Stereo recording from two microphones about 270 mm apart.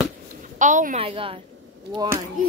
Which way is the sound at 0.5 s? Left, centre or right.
Right.